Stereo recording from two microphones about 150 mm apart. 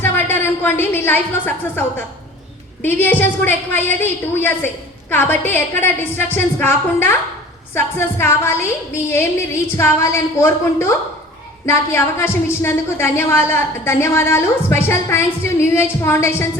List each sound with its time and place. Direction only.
0.0 s a woman's voice: 15° left (ahead or behind)
9.7 s a woman's voice: 15° left (ahead or behind)